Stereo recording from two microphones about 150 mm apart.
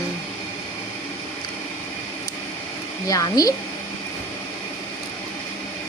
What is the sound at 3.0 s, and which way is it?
Speech, 20° left (ahead or behind).